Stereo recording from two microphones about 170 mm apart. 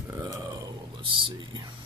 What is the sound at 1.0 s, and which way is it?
Speech, 30° right (ahead or behind).